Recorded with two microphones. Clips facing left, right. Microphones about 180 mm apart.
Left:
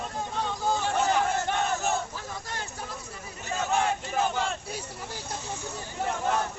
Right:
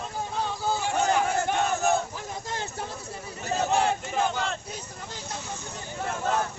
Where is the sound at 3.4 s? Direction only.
35° right (ahead or behind).